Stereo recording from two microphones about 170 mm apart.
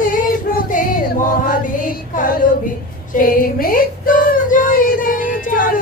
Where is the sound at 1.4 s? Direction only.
50° left (ahead or behind).